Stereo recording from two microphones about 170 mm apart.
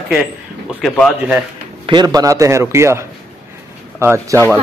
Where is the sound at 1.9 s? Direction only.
25° right (ahead or behind).